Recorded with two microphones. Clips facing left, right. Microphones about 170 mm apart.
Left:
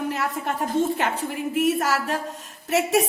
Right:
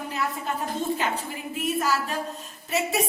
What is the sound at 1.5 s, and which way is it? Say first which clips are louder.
Speech: left 3 dB; 75° left (ahead or behind).